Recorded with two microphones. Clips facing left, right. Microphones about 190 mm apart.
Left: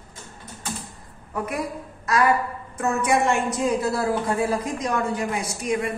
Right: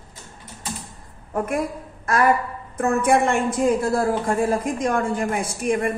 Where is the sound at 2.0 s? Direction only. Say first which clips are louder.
Right 1 dB; 50° right (ahead or behind).